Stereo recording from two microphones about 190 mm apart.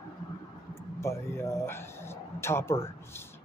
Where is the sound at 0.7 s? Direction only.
15° left (ahead or behind).